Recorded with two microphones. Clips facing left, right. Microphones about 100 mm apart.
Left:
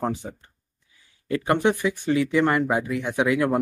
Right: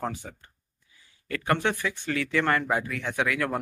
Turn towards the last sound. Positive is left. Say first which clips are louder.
# left 6 dB
turn(degrees=20)  # may be behind; listen again after turning